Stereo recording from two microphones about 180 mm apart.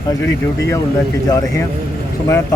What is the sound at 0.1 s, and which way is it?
Speech, 15° left (ahead or behind).